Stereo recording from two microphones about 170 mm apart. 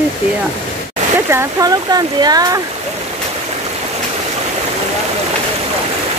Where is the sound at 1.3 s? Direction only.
20° right (ahead or behind).